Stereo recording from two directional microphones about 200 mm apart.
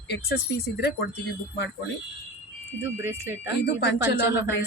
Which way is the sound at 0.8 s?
55° left (ahead or behind).